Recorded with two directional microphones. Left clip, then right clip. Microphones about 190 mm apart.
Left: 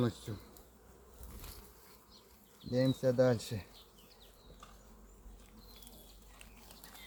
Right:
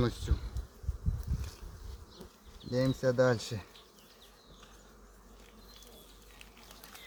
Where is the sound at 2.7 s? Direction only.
10° right (ahead or behind).